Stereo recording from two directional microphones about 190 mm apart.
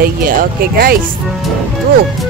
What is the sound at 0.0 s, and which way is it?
Speech, 50° right (ahead or behind).